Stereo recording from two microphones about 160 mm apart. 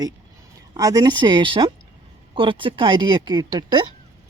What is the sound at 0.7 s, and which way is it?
Speech, 25° right (ahead or behind).